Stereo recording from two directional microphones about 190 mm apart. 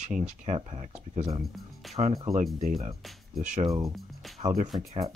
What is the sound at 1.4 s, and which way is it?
Speech, centre (ahead or behind).